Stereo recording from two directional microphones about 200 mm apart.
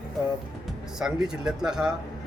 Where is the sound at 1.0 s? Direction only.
5° right (ahead or behind).